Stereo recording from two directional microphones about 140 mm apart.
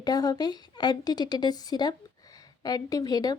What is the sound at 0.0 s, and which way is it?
A woman's voice, 30° left (ahead or behind).